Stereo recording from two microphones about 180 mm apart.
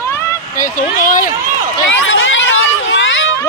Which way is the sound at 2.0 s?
90° left.